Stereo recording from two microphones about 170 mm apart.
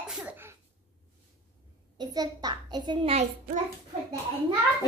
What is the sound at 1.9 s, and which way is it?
A child's voice, 25° right (ahead or behind).